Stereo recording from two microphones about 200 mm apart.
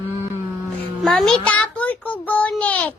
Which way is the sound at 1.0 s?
Centre (ahead or behind).